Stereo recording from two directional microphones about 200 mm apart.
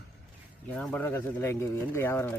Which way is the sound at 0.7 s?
5° left (ahead or behind).